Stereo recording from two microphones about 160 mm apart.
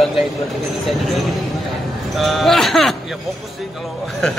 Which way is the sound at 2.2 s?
Centre (ahead or behind).